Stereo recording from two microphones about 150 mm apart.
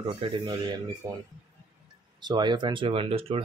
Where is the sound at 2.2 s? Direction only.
30° right (ahead or behind).